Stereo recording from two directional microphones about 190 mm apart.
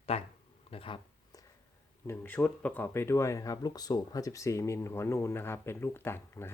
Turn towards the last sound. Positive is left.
turn(degrees=10)  # may be behind; listen again after turning